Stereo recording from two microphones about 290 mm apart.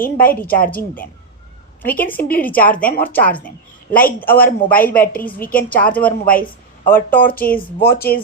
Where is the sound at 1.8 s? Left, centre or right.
Centre.